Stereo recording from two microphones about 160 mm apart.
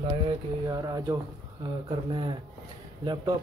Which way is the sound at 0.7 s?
25° right (ahead or behind).